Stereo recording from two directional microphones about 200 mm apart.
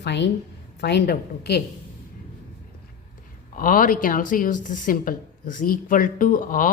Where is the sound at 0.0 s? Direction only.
60° left (ahead or behind).